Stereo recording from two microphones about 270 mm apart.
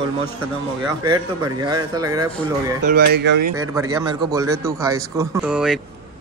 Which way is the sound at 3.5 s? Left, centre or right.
Centre.